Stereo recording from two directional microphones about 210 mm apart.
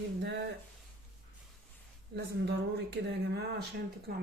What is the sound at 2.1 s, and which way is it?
Speech, 50° right (ahead or behind).